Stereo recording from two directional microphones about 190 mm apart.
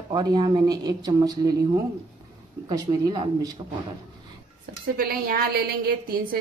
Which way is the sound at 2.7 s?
20° right (ahead or behind).